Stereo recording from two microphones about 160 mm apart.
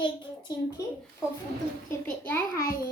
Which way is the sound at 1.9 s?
15° left (ahead or behind).